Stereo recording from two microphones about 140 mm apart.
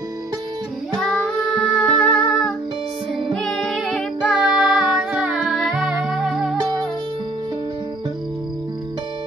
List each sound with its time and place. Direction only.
0.9 s music: 5° left (ahead or behind)